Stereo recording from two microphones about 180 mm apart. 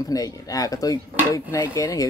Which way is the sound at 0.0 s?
20° left (ahead or behind).